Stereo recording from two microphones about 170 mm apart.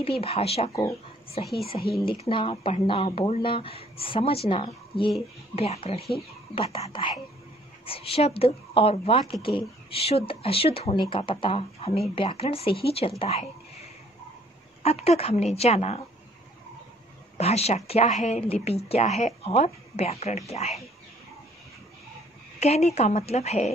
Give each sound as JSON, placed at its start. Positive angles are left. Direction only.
{"t": 0.0, "sound": "a woman's voice", "side_deg": 35}
{"t": 17.4, "sound": "a woman's voice", "side_deg": 40}
{"t": 22.6, "sound": "a woman's voice", "side_deg": 40}